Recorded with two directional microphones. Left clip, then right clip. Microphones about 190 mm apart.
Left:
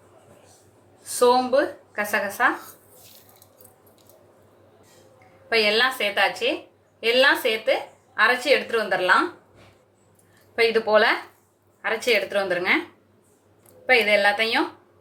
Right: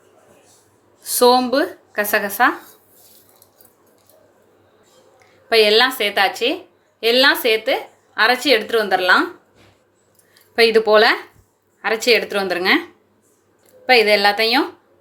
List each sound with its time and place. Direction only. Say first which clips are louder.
1.0 s speech: right 5 dB; 55° right (ahead or behind)
5.5 s a woman's voice: right 6 dB; 55° right (ahead or behind)
10.5 s a woman's voice: right 6 dB; 55° right (ahead or behind)
13.8 s a woman's voice: right 5 dB; 55° right (ahead or behind)